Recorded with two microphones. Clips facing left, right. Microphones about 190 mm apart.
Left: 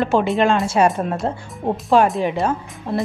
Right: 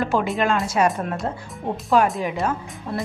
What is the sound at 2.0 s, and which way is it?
Speech, 30° left (ahead or behind).